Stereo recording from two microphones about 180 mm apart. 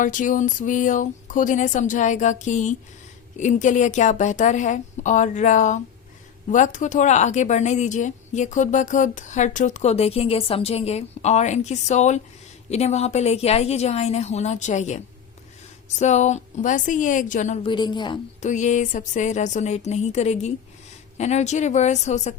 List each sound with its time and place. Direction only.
0.0 s speech: 45° left (ahead or behind)
17.6 s a woman's voice: 25° left (ahead or behind)
18.4 s speech: 40° left (ahead or behind)